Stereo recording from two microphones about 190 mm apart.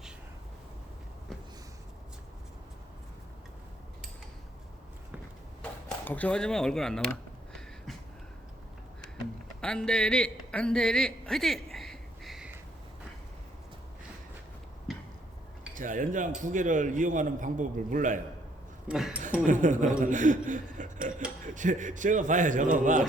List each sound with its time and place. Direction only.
6.1 s speech: 5° left (ahead or behind)
9.6 s a sound: 5° left (ahead or behind)
14.9 s a sound: centre (ahead or behind)
15.7 s a man's voice: 45° right (ahead or behind)
18.9 s speech: 5° right (ahead or behind)
19.5 s a man's voice: 40° right (ahead or behind)